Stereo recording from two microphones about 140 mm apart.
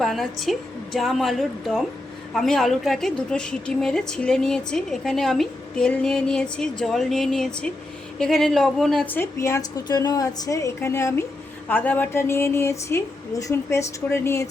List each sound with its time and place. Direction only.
0.0 s a woman's voice: centre (ahead or behind); by 14.5 s 20° left (ahead or behind)